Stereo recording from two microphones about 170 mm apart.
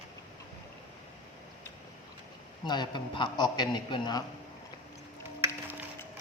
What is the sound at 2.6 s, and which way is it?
A man's voice, 25° left (ahead or behind).